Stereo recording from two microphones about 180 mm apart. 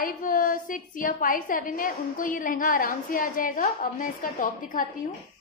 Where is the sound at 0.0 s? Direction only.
50° left (ahead or behind).